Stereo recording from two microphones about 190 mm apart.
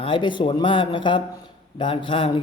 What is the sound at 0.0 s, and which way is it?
A man's voice, 25° left (ahead or behind).